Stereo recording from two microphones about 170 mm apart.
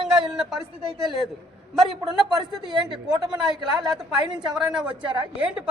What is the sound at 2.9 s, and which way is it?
A woman's voice, 25° right (ahead or behind).